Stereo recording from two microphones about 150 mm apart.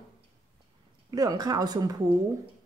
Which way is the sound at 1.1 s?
25° right (ahead or behind).